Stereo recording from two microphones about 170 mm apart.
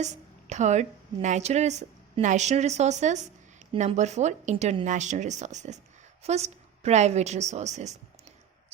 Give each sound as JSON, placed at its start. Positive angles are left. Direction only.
{"t": 0.0, "sound": "a woman's voice", "side_deg": -45}